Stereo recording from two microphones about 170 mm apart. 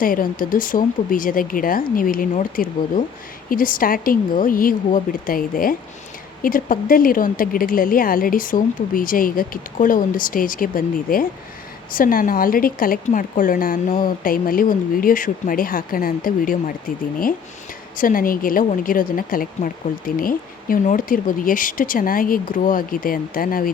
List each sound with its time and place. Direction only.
0.0 s speech: 55° left (ahead or behind)
17.9 s speech: 55° left (ahead or behind)